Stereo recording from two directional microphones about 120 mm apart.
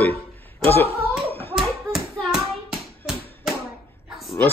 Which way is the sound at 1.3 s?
50° right (ahead or behind).